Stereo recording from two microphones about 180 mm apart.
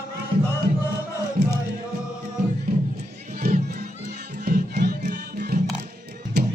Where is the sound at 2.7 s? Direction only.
55° right (ahead or behind).